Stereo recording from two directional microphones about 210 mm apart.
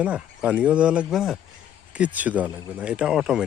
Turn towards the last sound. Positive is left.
turn(degrees=-5)  # may be behind; listen again after turning